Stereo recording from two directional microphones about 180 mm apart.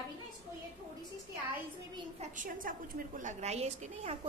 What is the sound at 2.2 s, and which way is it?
A woman's voice, 45° right (ahead or behind).